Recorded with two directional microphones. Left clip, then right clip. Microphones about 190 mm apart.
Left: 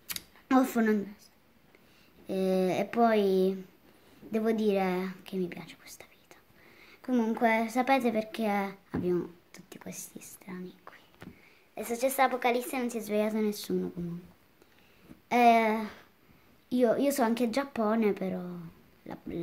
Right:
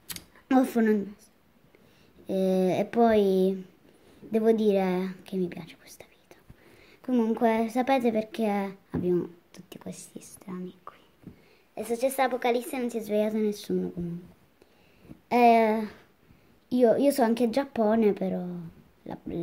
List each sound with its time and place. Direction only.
0.1 s camera: centre (ahead or behind)
2.2 s a woman's voice: 5° right (ahead or behind)
15.2 s a woman's voice: 5° right (ahead or behind)